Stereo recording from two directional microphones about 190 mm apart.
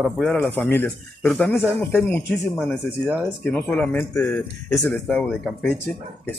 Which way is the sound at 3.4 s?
5° left (ahead or behind).